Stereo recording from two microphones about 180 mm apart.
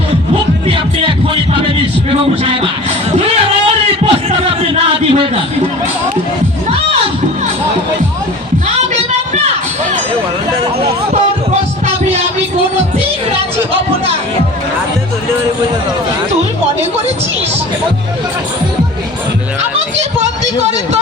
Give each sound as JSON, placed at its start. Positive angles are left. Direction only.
{"t": 0.7, "sound": "music", "side_deg": -30}
{"t": 3.2, "sound": "a sound", "side_deg": -35}
{"t": 5.1, "sound": "a man's voice", "side_deg": -30}